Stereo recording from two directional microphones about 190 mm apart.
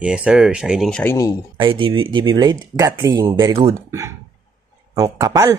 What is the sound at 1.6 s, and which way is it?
A man's voice, 25° right (ahead or behind).